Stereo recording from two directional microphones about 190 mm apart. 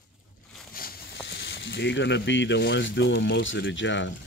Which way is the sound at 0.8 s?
50° left (ahead or behind).